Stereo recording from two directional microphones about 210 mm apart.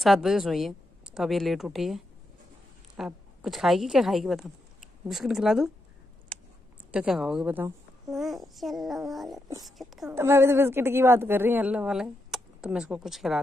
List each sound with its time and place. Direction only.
0.0 s a woman's voice: centre (ahead or behind)
6.3 s a sound: 5° left (ahead or behind)
6.9 s a child's voice: 5° right (ahead or behind)
10.1 s speech: 10° right (ahead or behind)